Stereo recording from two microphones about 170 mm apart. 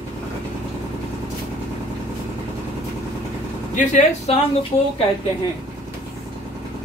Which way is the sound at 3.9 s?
45° left (ahead or behind).